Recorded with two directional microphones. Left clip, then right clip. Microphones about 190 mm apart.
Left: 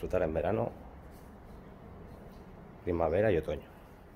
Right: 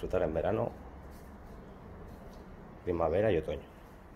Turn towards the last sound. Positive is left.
turn(degrees=25)  # may be behind; listen again after turning